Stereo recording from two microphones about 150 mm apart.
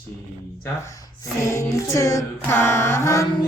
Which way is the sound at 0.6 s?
20° left (ahead or behind).